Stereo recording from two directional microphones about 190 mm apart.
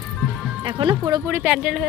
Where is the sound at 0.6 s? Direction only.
25° right (ahead or behind).